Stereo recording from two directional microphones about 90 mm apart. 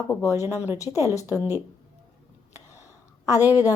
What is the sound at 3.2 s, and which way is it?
Speech, 40° left (ahead or behind).